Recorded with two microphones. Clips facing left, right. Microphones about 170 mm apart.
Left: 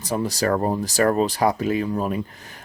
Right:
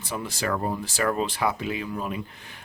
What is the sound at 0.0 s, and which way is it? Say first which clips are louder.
Speech: left 7 dB; 40° left (ahead or behind).